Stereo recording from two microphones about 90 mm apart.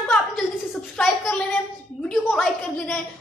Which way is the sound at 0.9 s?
10° left (ahead or behind).